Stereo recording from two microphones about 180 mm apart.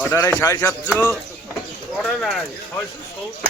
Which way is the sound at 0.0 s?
10° left (ahead or behind).